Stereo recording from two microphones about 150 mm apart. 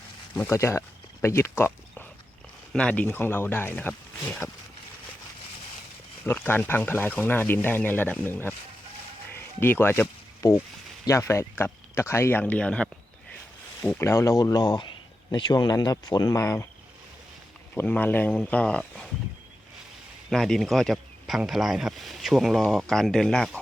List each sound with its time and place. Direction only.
0.3 s a sound: 15° left (ahead or behind)
2.7 s speech: 10° left (ahead or behind)
6.2 s speech: 15° left (ahead or behind)
9.3 s music: 15° left (ahead or behind)
11.0 s speech: 20° left (ahead or behind)
13.8 s speech: 20° left (ahead or behind)
17.7 s speech: 10° left (ahead or behind)
20.3 s a man's voice: centre (ahead or behind)